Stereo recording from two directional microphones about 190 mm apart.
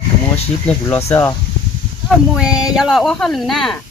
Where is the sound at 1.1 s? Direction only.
15° left (ahead or behind).